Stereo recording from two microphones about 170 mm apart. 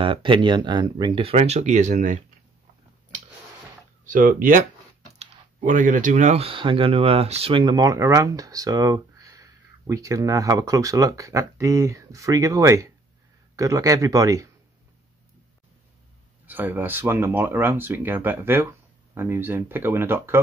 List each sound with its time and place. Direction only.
0.0 s speech: 30° right (ahead or behind); by 2.2 s 45° right (ahead or behind)
4.0 s speech: 50° right (ahead or behind); by 14.5 s 20° right (ahead or behind)
16.4 s speech: 10° right (ahead or behind)